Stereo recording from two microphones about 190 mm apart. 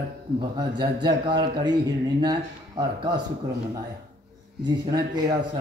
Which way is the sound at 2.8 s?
20° right (ahead or behind).